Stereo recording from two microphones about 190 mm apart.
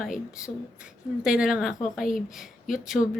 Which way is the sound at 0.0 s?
5° right (ahead or behind).